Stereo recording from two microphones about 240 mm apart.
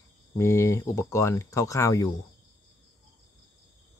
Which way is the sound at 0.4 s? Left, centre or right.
Centre.